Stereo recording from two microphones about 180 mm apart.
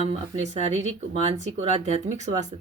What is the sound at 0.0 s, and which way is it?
Speech, 40° right (ahead or behind).